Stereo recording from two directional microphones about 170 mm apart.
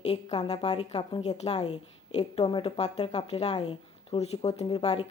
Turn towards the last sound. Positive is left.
turn(degrees=30)  # may be behind; listen again after turning